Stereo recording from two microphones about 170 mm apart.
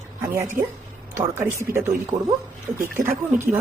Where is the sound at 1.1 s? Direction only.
15° right (ahead or behind).